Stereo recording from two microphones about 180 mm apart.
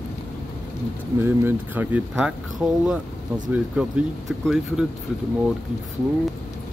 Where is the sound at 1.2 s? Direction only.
10° right (ahead or behind).